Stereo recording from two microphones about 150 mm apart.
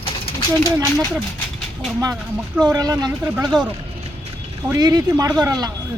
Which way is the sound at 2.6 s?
25° right (ahead or behind).